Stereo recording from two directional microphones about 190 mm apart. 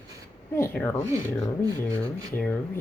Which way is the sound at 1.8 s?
20° right (ahead or behind).